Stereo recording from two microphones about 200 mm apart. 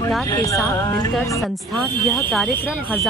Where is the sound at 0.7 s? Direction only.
20° left (ahead or behind).